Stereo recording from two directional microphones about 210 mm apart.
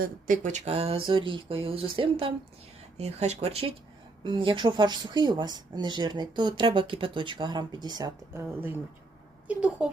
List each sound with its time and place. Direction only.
0.0 s a woman's voice: 40° right (ahead or behind); by 9.9 s 5° right (ahead or behind)